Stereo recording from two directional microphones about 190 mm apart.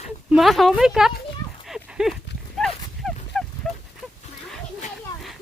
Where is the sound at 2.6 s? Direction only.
Centre (ahead or behind).